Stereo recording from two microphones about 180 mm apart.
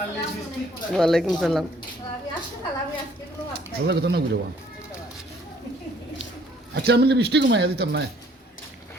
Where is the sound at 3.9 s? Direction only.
70° right (ahead or behind).